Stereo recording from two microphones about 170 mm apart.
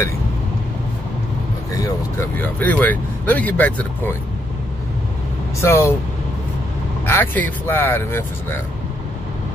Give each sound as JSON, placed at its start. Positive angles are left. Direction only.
{"t": 1.8, "sound": "speech", "side_deg": 15}
{"t": 5.6, "sound": "speech", "side_deg": 15}
{"t": 7.1, "sound": "speech", "side_deg": 10}